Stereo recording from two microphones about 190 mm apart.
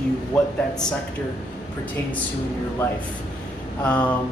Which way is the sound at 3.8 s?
5° left (ahead or behind).